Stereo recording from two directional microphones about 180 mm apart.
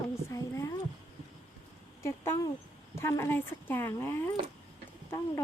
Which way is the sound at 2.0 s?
15° left (ahead or behind).